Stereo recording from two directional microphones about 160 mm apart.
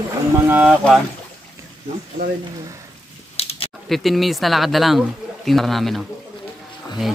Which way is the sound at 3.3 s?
40° left (ahead or behind).